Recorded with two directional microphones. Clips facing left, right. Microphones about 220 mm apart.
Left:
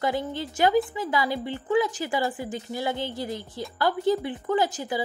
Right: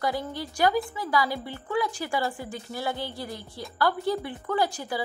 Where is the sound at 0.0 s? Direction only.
20° left (ahead or behind).